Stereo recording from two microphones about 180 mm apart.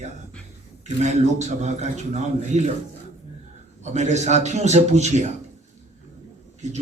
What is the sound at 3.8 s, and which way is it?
A man's voice, 40° right (ahead or behind).